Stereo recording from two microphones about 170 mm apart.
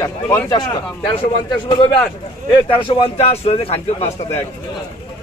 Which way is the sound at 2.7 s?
30° left (ahead or behind).